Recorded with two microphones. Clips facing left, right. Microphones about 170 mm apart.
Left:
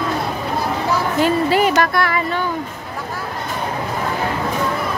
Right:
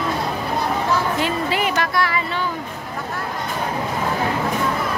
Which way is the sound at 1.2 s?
40° left (ahead or behind).